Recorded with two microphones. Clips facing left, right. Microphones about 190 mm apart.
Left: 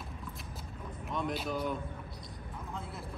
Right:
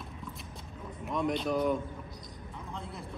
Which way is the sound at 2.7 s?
5° left (ahead or behind).